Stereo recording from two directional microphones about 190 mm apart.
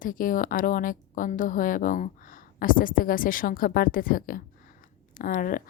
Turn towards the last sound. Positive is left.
turn(degrees=45)  # may be behind; listen again after turning